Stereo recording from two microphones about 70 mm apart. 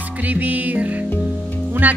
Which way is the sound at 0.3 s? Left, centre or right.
Right.